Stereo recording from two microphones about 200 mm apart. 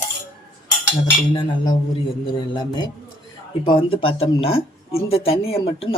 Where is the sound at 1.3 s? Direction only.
20° left (ahead or behind).